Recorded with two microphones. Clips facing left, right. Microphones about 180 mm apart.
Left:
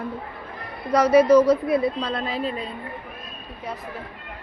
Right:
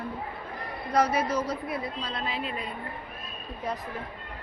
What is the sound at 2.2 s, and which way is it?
Speech, 40° left (ahead or behind).